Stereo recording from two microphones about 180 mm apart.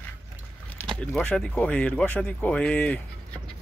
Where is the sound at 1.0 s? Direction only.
5° left (ahead or behind).